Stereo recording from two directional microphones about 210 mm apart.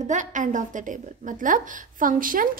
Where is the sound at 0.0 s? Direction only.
35° right (ahead or behind).